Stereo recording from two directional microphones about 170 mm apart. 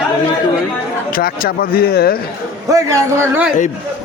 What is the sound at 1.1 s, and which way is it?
Speech, 60° left (ahead or behind).